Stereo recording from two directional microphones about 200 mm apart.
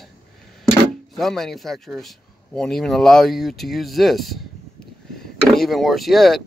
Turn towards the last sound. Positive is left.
turn(degrees=0)  # may be behind; listen again after turning